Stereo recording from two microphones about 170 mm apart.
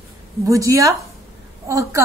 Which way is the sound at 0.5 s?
20° right (ahead or behind).